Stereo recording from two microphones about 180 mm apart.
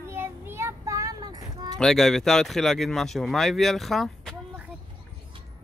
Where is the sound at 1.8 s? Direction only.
Centre (ahead or behind).